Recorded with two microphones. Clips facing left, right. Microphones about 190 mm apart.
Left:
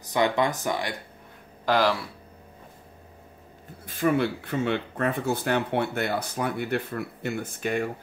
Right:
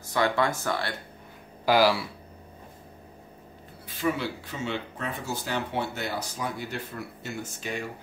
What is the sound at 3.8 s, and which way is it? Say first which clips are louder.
Speech: left 5 dB; 55° left (ahead or behind).